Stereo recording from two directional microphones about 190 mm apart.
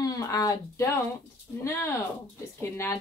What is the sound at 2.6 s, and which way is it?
Speech, 10° left (ahead or behind).